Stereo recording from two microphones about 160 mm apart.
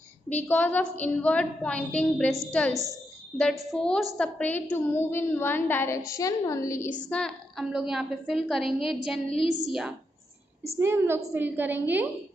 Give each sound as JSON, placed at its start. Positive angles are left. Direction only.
{"t": 0.4, "sound": "a woman's voice", "side_deg": 10}
{"t": 3.7, "sound": "a woman's voice", "side_deg": 5}
{"t": 7.0, "sound": "a woman's voice", "side_deg": 5}
{"t": 9.3, "sound": "a woman's voice", "side_deg": 40}
{"t": 9.7, "sound": "a woman's voice", "side_deg": -5}
{"t": 10.8, "sound": "a woman's voice", "side_deg": -15}